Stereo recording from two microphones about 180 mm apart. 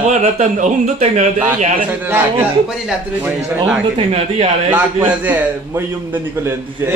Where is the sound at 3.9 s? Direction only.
35° right (ahead or behind).